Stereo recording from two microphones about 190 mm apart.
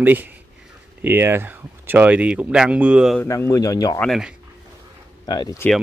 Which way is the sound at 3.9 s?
Centre (ahead or behind).